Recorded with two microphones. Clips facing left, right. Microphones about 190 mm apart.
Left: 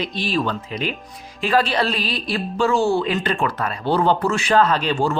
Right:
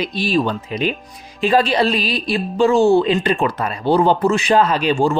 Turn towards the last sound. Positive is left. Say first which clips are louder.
# right 3 dB
turn(degrees=-10)  # may be behind; listen again after turning